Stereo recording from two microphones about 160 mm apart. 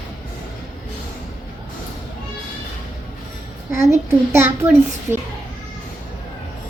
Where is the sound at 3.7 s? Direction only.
15° right (ahead or behind).